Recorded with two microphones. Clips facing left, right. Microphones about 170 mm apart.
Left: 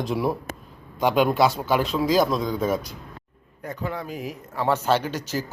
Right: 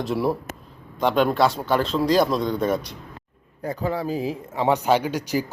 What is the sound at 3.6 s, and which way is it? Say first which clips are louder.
Speech: right 5 dB; 35° right (ahead or behind).